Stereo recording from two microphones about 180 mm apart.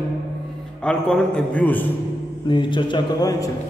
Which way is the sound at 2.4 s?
25° left (ahead or behind).